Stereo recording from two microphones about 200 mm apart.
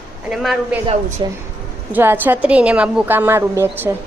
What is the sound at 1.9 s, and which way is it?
A woman's voice, 10° right (ahead or behind).